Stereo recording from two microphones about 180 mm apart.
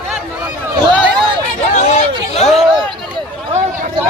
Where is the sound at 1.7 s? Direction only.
35° left (ahead or behind).